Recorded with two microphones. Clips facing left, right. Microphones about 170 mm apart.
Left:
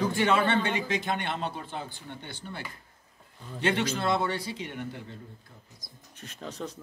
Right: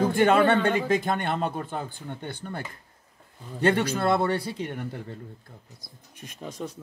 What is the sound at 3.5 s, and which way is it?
A man's voice, 55° right (ahead or behind).